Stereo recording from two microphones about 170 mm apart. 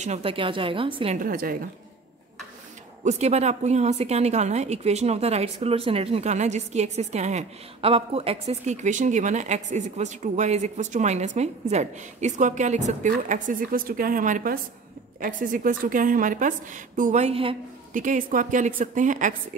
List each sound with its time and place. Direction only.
0.0 s a woman's voice: 35° right (ahead or behind)
1.1 s a woman's voice: 55° right (ahead or behind)
3.0 s a woman's voice: 40° right (ahead or behind)
17.9 s a woman's voice: 50° right (ahead or behind)